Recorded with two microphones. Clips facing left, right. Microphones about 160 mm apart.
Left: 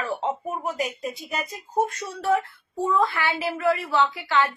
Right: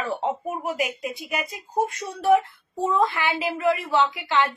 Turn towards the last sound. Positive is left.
turn(degrees=-20)  # may be behind; listen again after turning